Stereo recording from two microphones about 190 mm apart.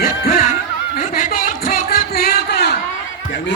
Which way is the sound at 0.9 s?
45° left (ahead or behind).